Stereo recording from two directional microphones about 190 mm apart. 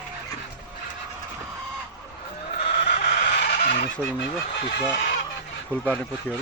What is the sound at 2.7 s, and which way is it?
Chicken, 55° left (ahead or behind).